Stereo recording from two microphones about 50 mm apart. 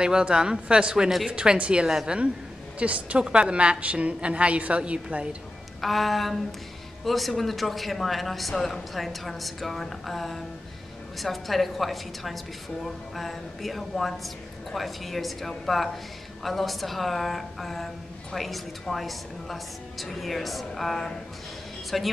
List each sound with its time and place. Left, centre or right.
0.0 s a woman's voice: centre
5.8 s speech: centre